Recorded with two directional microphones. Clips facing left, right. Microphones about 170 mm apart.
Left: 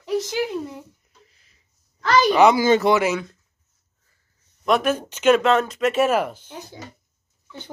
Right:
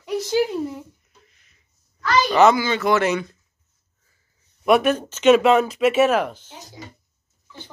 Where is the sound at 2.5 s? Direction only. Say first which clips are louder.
Left 5 dB; 40° left (ahead or behind).